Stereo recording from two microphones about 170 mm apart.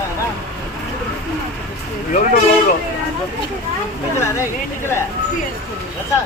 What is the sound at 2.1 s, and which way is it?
Speech, 50° left (ahead or behind).